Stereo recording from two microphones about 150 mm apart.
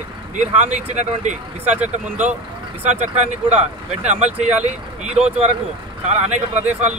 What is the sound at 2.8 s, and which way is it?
Speech, 50° right (ahead or behind).